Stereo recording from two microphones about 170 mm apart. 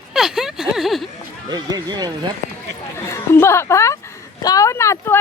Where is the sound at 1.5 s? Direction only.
25° right (ahead or behind).